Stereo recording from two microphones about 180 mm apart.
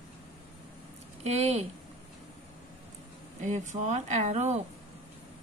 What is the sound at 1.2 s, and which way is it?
Speech, 35° right (ahead or behind).